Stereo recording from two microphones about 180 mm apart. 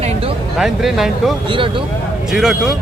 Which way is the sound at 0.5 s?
Centre (ahead or behind).